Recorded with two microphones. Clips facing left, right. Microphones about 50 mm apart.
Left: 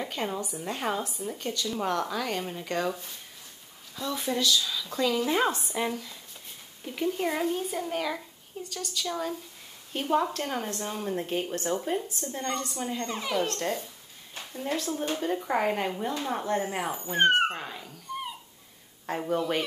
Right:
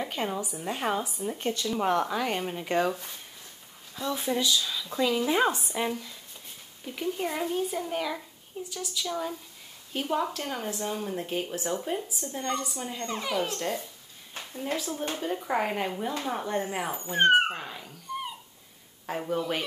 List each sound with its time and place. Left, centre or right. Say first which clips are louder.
0.0 s speech: right 1 dB; centre
3.9 s a sound: right 1 dB; centre
4.4 s speech: left 1 dB; centre
9.9 s speech: left 2 dB; centre
14.8 s speech: left 2 dB; centre